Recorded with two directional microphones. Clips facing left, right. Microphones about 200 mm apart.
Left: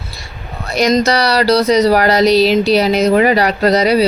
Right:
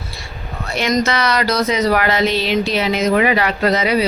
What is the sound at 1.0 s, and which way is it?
Speech, 35° left (ahead or behind).